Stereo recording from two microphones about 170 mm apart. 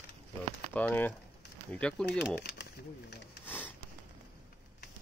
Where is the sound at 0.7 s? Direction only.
10° left (ahead or behind).